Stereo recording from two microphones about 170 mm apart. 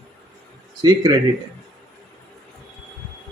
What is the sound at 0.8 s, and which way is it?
Speech, 25° right (ahead or behind).